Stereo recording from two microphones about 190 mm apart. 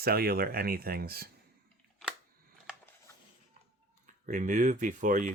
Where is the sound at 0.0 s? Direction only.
55° right (ahead or behind).